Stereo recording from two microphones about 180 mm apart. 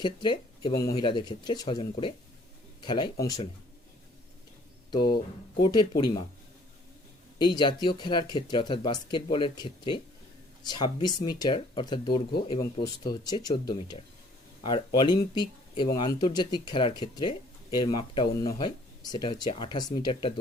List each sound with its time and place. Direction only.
0.0 s speech: 25° left (ahead or behind)
5.6 s speech: 25° left (ahead or behind)
7.3 s speech: 25° left (ahead or behind)